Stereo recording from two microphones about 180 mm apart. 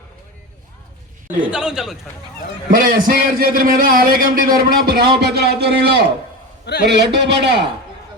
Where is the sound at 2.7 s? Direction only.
50° right (ahead or behind); by 7.6 s 70° right (ahead or behind).